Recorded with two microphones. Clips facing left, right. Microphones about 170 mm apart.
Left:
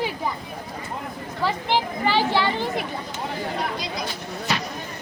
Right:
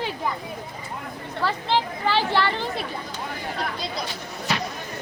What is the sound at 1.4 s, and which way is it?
Speech, 15° left (ahead or behind).